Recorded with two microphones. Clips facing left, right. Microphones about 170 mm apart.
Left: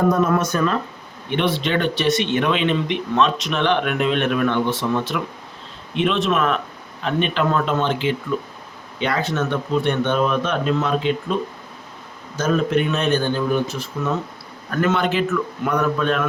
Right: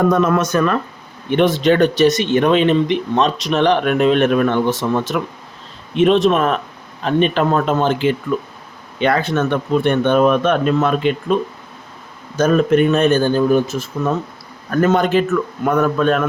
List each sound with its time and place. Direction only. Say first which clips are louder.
0.1 s speech: right 3 dB; 90° right; by 0.8 s 70° right (ahead or behind)
1.4 s speech: right 8 dB; 45° right (ahead or behind)
12.4 s speech: right 6 dB; 55° right (ahead or behind)